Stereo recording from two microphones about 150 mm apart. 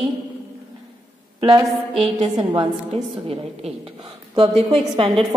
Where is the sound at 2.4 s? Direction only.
30° right (ahead or behind).